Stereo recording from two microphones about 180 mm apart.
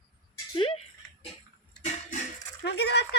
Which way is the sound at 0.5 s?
30° left (ahead or behind).